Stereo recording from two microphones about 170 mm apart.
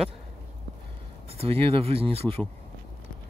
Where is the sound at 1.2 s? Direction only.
35° right (ahead or behind).